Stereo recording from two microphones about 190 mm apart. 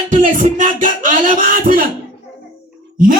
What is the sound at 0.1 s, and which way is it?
Music, 45° right (ahead or behind).